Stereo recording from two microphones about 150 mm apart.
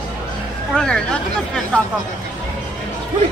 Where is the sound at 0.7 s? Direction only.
5° left (ahead or behind).